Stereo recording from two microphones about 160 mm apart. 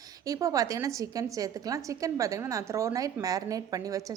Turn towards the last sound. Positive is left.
turn(degrees=-20)  # may be behind; listen again after turning